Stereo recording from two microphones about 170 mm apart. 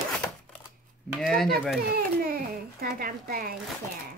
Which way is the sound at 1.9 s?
60° right (ahead or behind).